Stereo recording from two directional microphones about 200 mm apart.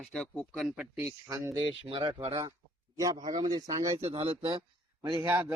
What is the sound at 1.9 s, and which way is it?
A man's voice, 25° right (ahead or behind).